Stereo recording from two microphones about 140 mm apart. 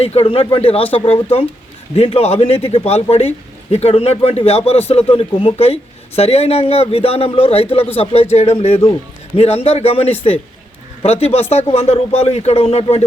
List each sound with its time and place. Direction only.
0.0 s a man's voice: 45° left (ahead or behind)